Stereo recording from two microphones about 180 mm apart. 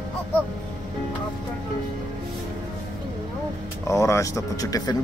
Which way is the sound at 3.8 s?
15° left (ahead or behind).